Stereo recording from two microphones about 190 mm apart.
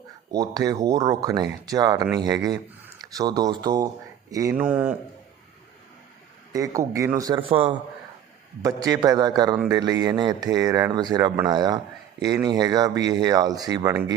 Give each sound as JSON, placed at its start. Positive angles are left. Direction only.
{"t": 0.3, "sound": "speech", "side_deg": -20}
{"t": 6.5, "sound": "speech", "side_deg": -15}